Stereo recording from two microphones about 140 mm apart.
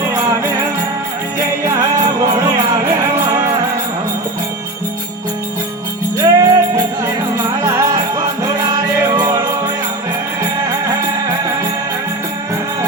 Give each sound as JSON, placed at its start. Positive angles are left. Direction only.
{"t": 0.3, "sound": "music", "side_deg": -25}
{"t": 1.6, "sound": "music", "side_deg": -20}
{"t": 6.1, "sound": "music", "side_deg": -25}
{"t": 9.0, "sound": "music", "side_deg": -20}